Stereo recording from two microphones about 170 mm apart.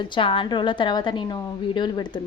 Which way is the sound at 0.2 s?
30° left (ahead or behind).